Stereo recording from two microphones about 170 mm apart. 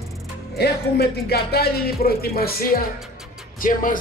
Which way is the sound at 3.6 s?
55° left (ahead or behind).